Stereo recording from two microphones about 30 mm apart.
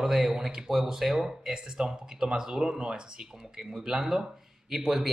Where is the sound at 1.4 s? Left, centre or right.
Right.